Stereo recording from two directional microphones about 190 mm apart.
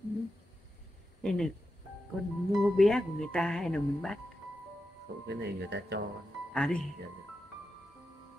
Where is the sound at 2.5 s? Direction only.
Centre (ahead or behind).